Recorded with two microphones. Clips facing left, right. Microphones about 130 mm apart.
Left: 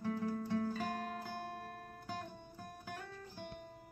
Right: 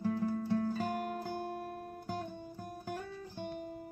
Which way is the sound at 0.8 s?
25° right (ahead or behind).